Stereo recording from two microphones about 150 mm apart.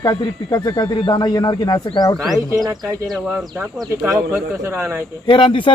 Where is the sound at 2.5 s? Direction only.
25° right (ahead or behind).